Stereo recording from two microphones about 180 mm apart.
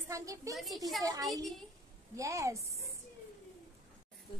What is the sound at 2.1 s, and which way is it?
Speech, 15° right (ahead or behind).